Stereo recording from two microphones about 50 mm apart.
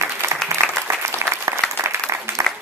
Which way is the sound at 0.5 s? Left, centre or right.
Right.